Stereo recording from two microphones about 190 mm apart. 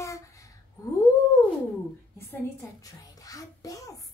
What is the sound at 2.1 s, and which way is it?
Music, 10° left (ahead or behind).